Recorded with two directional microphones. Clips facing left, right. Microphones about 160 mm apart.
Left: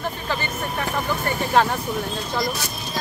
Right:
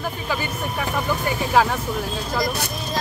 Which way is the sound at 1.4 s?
5° right (ahead or behind).